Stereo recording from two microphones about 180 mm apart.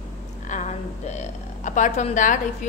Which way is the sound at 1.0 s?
40° left (ahead or behind).